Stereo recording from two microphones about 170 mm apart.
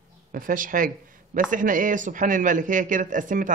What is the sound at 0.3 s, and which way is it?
A man's voice, 55° right (ahead or behind).